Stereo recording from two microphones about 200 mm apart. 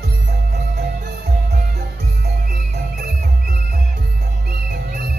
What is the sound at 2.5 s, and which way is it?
Music, 45° right (ahead or behind).